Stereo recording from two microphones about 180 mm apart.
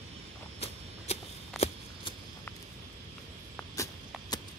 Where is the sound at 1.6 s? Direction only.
35° left (ahead or behind).